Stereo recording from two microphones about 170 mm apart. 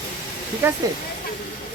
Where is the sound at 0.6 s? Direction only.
15° right (ahead or behind).